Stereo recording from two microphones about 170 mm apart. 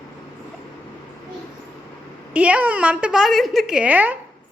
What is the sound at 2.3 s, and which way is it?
A woman's voice, 10° right (ahead or behind).